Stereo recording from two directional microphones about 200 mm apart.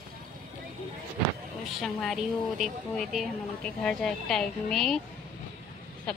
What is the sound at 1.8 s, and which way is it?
A woman's voice, centre (ahead or behind).